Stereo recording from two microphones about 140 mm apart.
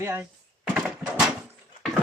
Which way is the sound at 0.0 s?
15° right (ahead or behind).